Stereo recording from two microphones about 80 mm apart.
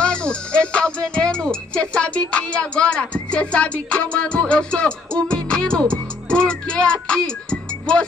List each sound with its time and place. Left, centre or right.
0.0 s speech: centre